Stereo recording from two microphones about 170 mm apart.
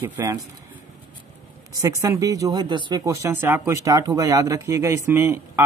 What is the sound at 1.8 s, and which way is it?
Speech, 20° right (ahead or behind).